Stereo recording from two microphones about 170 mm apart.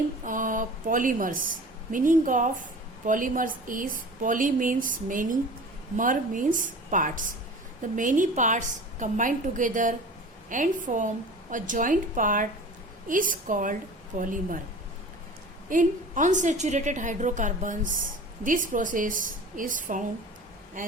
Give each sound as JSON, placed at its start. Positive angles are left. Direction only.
{"t": 0.3, "sound": "a woman's voice", "side_deg": -50}
{"t": 15.7, "sound": "a woman's voice", "side_deg": -50}